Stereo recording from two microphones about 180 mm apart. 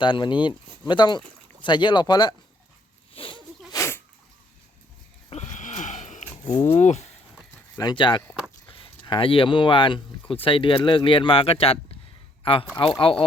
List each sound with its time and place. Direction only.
0.0 s speech: 25° left (ahead or behind)
3.1 s zipper: 30° left (ahead or behind)
3.7 s sneeze: 15° left (ahead or behind)
5.3 s sniff: 40° left (ahead or behind)
7.8 s speech: 25° left (ahead or behind)